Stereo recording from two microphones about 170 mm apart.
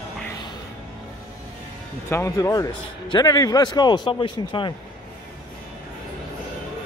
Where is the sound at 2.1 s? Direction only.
20° left (ahead or behind).